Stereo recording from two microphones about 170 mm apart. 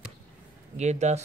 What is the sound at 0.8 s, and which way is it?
Speech, 40° right (ahead or behind).